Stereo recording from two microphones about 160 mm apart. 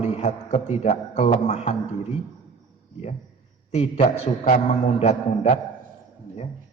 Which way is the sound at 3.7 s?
40° left (ahead or behind).